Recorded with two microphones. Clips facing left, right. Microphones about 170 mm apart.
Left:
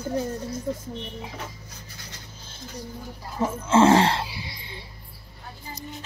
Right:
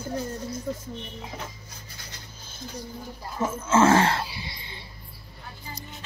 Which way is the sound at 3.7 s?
30° left (ahead or behind).